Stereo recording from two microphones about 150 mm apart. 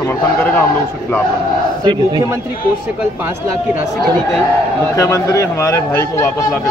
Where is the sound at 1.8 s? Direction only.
30° right (ahead or behind).